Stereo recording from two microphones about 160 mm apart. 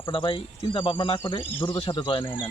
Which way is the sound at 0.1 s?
30° left (ahead or behind).